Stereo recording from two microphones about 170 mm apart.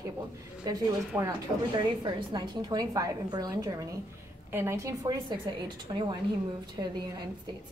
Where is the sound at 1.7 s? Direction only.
25° right (ahead or behind).